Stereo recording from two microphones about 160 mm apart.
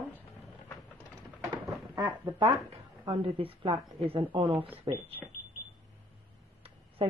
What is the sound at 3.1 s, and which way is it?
Speech, 35° right (ahead or behind).